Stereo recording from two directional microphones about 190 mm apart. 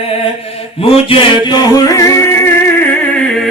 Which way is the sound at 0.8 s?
30° left (ahead or behind).